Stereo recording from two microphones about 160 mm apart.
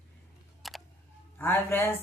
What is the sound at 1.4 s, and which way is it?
Speech, 10° left (ahead or behind).